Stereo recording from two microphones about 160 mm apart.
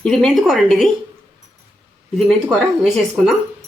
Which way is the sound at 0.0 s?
5° left (ahead or behind).